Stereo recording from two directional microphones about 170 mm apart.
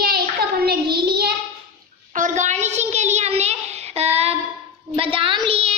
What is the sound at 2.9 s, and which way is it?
Child singing, 40° right (ahead or behind).